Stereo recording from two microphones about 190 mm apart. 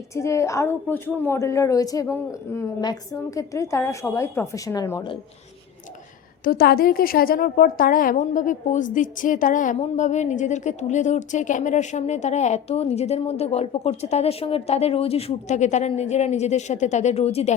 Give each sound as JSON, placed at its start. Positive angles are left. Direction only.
{"t": 0.1, "sound": "a woman's voice", "side_deg": 15}
{"t": 6.4, "sound": "a woman's voice", "side_deg": 50}